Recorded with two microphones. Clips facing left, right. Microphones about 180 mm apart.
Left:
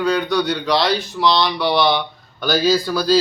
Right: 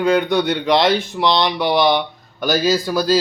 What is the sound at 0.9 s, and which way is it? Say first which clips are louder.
Speech: right 1 dB; 20° right (ahead or behind).